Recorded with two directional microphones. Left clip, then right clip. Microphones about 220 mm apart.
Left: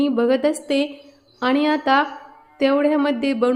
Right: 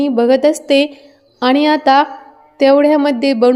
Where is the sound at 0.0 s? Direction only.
20° right (ahead or behind).